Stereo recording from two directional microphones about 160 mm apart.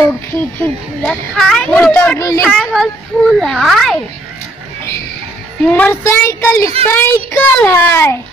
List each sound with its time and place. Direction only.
1.0 s a child's voice: 5° left (ahead or behind); by 2.4 s 20° left (ahead or behind)
2.4 s a child's voice: centre (ahead or behind)
5.7 s a child's voice: 15° left (ahead or behind)
6.6 s a woman's voice: 35° right (ahead or behind)
6.9 s a child's voice: 15° left (ahead or behind)